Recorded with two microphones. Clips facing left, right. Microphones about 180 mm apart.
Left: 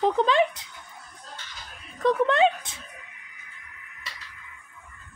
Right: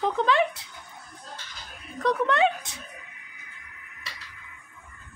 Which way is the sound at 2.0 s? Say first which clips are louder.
Left 2 dB; 25° left (ahead or behind).